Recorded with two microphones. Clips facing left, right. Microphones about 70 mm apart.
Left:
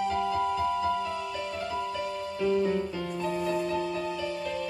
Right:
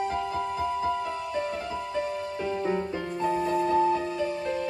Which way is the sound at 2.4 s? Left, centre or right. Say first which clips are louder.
Left 3 dB; right.